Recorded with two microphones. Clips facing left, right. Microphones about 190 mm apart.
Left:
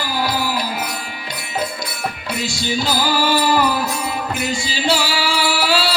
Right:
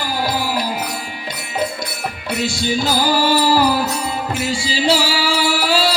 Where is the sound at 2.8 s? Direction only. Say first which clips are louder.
Right 2 dB; 40° right (ahead or behind).